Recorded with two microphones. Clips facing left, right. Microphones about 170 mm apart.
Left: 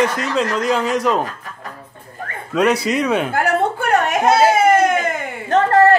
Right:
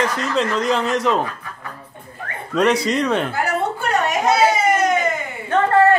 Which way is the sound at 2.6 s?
5° left (ahead or behind).